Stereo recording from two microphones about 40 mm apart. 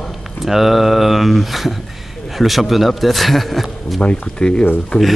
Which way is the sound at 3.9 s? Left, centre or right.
Left.